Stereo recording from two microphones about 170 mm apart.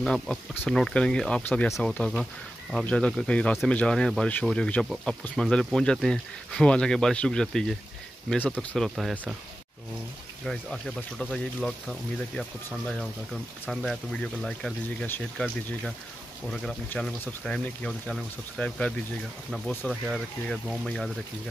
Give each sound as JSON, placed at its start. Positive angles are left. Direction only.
{"t": 0.0, "sound": "speech", "side_deg": 5}
{"t": 10.4, "sound": "speech", "side_deg": 0}
{"t": 16.6, "sound": "speech", "side_deg": 5}